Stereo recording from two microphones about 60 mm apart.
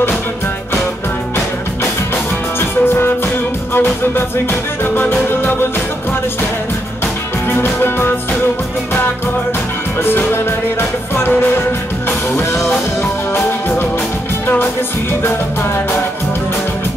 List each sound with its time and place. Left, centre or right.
2.6 s music: left
7.4 s music: left
10.1 s music: left
13.3 s music: left
15.2 s music: left